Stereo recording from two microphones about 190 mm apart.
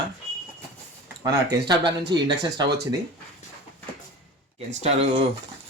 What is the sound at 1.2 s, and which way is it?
Speech, 20° right (ahead or behind).